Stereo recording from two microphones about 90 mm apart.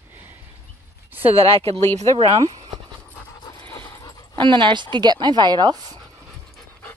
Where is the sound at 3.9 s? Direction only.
45° left (ahead or behind).